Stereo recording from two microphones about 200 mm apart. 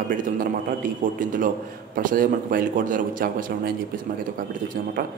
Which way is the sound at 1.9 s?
45° right (ahead or behind).